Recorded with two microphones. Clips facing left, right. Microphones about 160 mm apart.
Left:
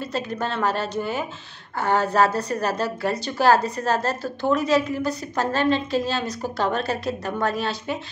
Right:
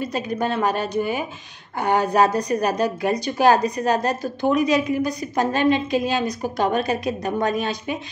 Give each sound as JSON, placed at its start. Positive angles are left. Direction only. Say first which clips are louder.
{"t": 0.0, "sound": "a woman's voice", "louder": "right 3 dB", "side_deg": -15}